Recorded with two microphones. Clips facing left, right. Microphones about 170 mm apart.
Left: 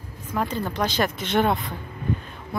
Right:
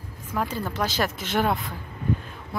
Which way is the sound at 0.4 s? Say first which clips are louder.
Left 2 dB; 5° right (ahead or behind).